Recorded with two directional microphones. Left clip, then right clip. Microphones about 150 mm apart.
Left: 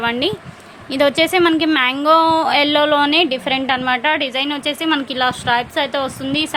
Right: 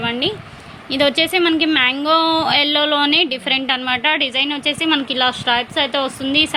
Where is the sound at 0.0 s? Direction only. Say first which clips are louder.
Left 2 dB; 20° left (ahead or behind).